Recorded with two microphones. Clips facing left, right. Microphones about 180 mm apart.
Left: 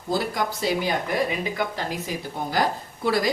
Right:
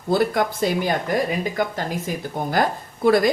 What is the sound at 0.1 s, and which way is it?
A woman's voice, 55° right (ahead or behind).